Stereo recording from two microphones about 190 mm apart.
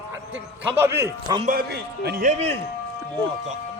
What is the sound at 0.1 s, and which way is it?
A man's voice, 10° right (ahead or behind).